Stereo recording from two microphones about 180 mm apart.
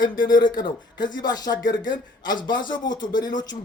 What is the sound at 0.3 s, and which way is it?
A man's voice, 25° left (ahead or behind).